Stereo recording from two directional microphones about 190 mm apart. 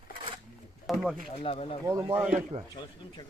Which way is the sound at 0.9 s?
Centre (ahead or behind).